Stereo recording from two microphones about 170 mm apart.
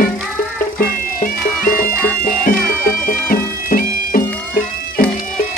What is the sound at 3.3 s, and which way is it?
Music, 55° left (ahead or behind).